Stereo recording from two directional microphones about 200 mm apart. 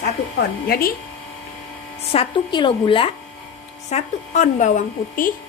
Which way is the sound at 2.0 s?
25° left (ahead or behind).